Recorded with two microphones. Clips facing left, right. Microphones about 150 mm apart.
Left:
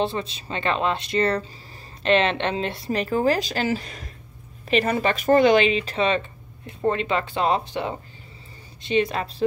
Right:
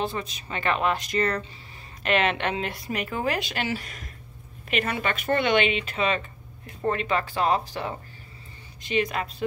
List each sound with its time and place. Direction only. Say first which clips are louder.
0.0 s speech: left 4 dB; 30° left (ahead or behind)